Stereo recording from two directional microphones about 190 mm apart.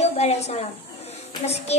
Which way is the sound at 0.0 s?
35° left (ahead or behind).